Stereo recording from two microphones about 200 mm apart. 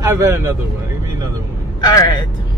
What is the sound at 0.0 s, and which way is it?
Speech, 15° right (ahead or behind).